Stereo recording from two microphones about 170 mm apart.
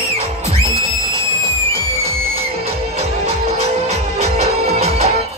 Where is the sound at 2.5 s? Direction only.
35° right (ahead or behind).